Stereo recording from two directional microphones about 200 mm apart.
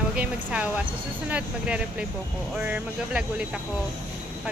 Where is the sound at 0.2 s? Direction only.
5° right (ahead or behind).